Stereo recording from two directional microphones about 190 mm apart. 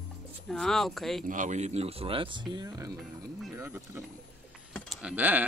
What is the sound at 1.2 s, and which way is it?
Speech, 40° right (ahead or behind).